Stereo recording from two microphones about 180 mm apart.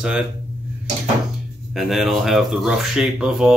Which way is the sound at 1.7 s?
Centre (ahead or behind).